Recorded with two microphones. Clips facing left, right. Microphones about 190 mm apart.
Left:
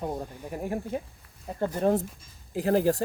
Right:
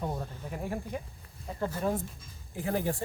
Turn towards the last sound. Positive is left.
turn(degrees=85)